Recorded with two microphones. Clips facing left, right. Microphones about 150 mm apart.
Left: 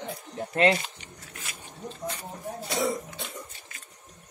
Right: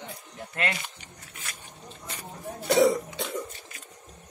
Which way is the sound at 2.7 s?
75° right (ahead or behind).